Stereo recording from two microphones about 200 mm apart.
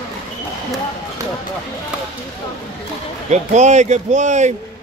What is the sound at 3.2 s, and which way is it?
A man's voice, 35° right (ahead or behind).